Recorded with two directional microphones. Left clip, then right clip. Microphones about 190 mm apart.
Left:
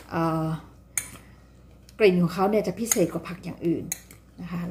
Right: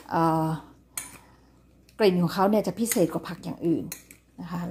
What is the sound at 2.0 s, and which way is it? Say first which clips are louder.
Speech: left 1 dB; 35° right (ahead or behind).